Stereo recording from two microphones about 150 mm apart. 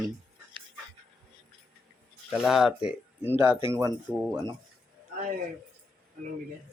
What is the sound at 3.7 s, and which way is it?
Speech, 20° right (ahead or behind).